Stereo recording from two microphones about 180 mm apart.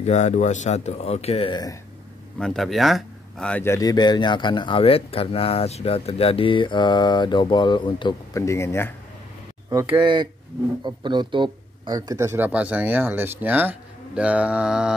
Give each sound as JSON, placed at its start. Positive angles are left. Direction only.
{"t": 0.0, "sound": "speech", "side_deg": 40}
{"t": 2.3, "sound": "a man's voice", "side_deg": 0}
{"t": 9.9, "sound": "speech", "side_deg": -25}